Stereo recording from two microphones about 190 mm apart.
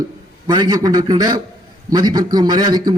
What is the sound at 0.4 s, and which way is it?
A man's voice, 20° right (ahead or behind).